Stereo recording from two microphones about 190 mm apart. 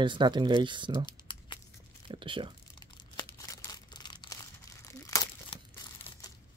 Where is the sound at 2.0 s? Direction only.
25° right (ahead or behind).